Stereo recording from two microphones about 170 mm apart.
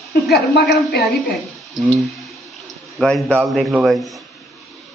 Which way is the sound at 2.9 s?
Centre (ahead or behind).